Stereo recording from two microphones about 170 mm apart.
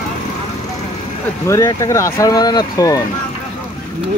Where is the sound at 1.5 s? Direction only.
20° left (ahead or behind).